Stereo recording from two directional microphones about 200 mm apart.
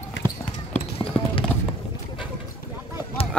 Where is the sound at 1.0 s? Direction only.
15° left (ahead or behind).